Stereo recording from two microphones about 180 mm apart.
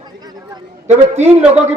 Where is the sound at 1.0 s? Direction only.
35° right (ahead or behind).